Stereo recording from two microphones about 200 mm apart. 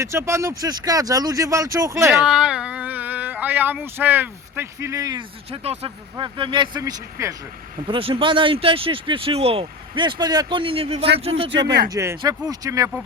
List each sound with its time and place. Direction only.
0.0 s speech: 15° right (ahead or behind)
5.5 s speech: 30° right (ahead or behind)
11.5 s speech: 60° right (ahead or behind)
11.9 s speech: 15° right (ahead or behind)